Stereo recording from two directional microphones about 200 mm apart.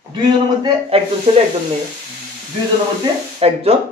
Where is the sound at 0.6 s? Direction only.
30° right (ahead or behind).